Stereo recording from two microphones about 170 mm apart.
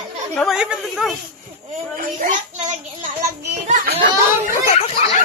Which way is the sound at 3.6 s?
45° right (ahead or behind).